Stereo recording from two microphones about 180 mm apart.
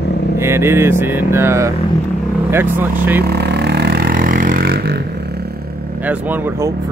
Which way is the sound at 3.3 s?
65° right (ahead or behind).